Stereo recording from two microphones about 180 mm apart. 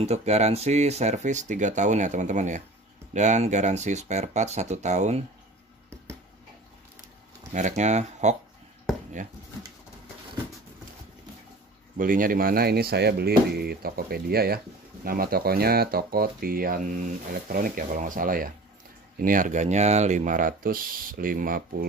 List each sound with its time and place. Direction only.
0.0 s speech: 35° right (ahead or behind)
7.5 s speech: 40° right (ahead or behind)
12.0 s speech: 50° right (ahead or behind)